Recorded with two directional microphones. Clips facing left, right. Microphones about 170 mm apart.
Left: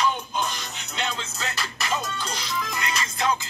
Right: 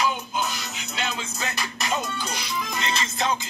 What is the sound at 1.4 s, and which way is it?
Music, 15° right (ahead or behind).